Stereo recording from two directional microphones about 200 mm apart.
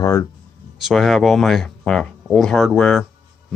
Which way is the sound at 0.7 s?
Centre (ahead or behind).